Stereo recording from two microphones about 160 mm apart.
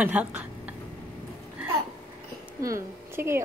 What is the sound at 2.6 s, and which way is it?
Speech, 20° right (ahead or behind).